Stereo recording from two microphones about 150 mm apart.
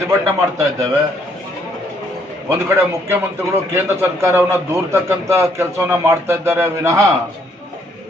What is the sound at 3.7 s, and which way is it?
A man's voice, 15° right (ahead or behind).